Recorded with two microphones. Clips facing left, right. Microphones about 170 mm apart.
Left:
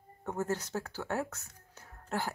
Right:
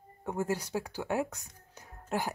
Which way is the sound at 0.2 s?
10° right (ahead or behind).